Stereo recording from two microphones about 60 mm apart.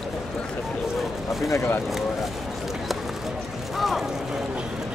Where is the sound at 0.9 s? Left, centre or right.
Centre.